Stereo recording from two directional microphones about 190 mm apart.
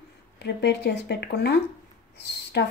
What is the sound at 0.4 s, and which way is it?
Speech, 60° left (ahead or behind).